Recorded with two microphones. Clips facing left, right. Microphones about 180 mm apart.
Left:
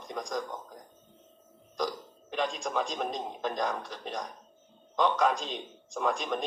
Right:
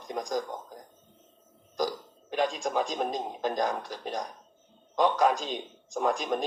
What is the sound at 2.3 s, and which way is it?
A man's voice, centre (ahead or behind).